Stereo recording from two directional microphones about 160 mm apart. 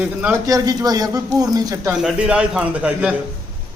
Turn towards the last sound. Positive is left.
turn(degrees=-10)  # may be behind; listen again after turning